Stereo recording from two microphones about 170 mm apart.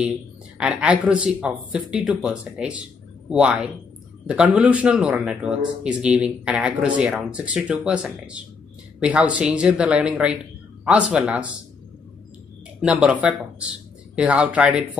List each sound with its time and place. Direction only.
0.6 s speech: 5° right (ahead or behind)
12.8 s speech: 5° right (ahead or behind)